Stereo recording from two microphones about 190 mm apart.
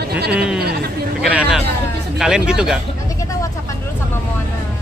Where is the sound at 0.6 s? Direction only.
55° right (ahead or behind).